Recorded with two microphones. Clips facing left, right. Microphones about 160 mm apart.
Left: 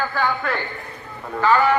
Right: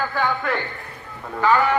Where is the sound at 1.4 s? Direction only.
15° right (ahead or behind).